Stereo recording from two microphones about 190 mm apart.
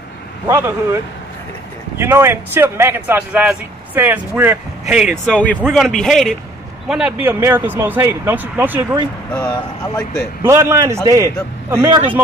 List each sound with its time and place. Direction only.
0.5 s speech: 15° right (ahead or behind)
5.2 s a man's voice: 5° left (ahead or behind); by 8.8 s 10° right (ahead or behind)
9.3 s speech: 10° left (ahead or behind)
10.4 s speech: 15° right (ahead or behind)